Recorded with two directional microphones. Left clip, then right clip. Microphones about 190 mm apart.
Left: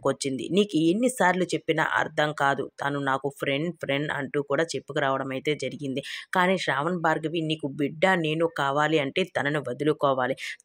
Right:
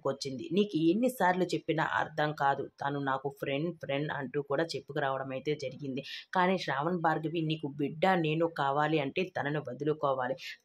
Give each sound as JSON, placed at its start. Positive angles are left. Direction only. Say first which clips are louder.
{"t": 0.0, "sound": "speech", "louder": "left 8 dB", "side_deg": 25}